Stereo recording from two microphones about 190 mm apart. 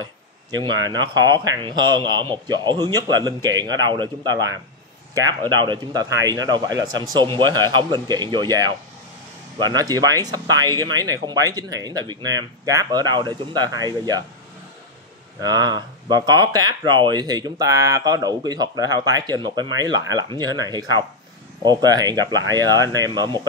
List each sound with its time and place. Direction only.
0.0 s speech: 20° right (ahead or behind)
15.4 s speech: 20° right (ahead or behind)